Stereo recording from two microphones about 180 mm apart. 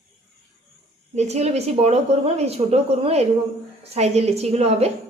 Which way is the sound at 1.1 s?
40° right (ahead or behind).